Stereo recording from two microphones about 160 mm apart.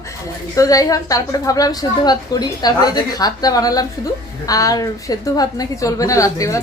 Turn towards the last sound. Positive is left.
turn(degrees=20)  # may be behind; listen again after turning